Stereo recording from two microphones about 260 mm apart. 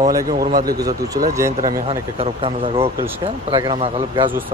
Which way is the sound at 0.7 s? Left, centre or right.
Centre.